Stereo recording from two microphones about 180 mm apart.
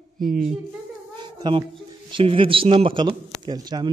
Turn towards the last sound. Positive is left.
turn(degrees=-20)  # may be behind; listen again after turning